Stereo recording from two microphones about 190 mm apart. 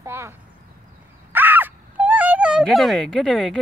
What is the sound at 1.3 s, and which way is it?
Wail, 10° right (ahead or behind).